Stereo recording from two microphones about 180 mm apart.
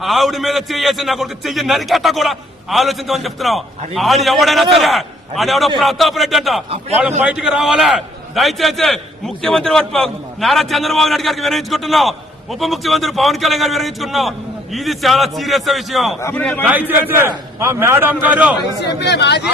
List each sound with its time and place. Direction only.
0.0 s a man's voice: centre (ahead or behind)
16.6 s a man's voice: 10° right (ahead or behind)
18.8 s speech: 70° left (ahead or behind)